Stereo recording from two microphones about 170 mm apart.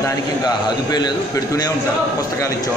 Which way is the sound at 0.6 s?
25° left (ahead or behind).